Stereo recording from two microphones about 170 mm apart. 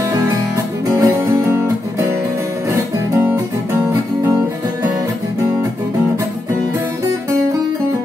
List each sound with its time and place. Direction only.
0.1 s music: 20° right (ahead or behind)
3.2 s music: 10° right (ahead or behind)